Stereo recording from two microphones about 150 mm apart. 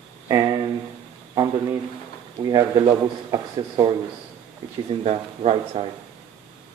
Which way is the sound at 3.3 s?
25° right (ahead or behind).